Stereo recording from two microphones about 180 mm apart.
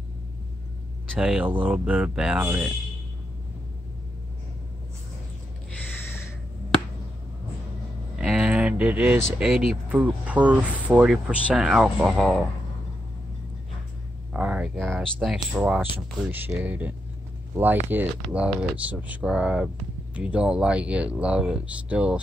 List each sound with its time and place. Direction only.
1.2 s speech: 5° right (ahead or behind)
8.2 s a sound: 5° right (ahead or behind)
9.8 s speech: 10° right (ahead or behind)
14.3 s speech: 5° right (ahead or behind)